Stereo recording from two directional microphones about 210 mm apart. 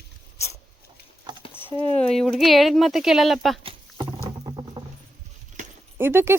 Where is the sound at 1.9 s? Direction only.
5° left (ahead or behind).